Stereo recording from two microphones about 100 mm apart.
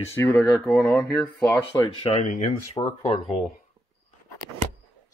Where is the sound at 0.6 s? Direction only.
Centre (ahead or behind).